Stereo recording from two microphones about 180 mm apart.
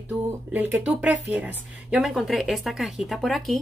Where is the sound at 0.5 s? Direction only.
10° right (ahead or behind).